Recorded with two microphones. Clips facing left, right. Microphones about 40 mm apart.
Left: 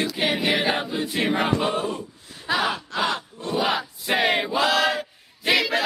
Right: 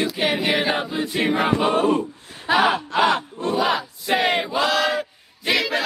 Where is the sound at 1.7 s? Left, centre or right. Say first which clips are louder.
Right 8 dB; right.